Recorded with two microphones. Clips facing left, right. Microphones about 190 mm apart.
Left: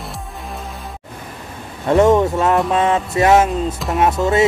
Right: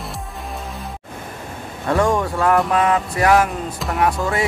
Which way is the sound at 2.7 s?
25° left (ahead or behind).